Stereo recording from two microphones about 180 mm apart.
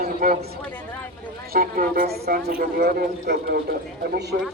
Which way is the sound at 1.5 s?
55° right (ahead or behind).